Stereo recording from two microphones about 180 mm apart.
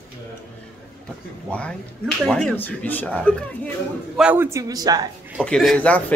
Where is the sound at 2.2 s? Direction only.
5° left (ahead or behind).